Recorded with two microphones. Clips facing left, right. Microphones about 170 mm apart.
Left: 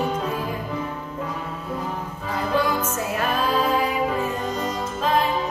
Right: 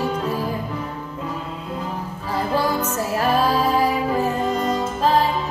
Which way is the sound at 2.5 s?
35° right (ahead or behind).